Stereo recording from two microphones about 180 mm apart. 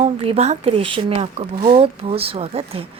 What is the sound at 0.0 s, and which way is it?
A woman's voice, 35° right (ahead or behind).